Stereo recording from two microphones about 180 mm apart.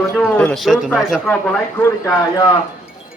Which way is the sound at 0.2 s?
10° left (ahead or behind).